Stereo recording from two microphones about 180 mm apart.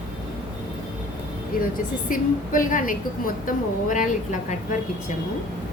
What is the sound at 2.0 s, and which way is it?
A woman's voice, 50° left (ahead or behind).